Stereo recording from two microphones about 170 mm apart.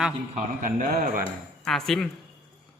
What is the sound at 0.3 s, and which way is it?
Speech, 55° right (ahead or behind).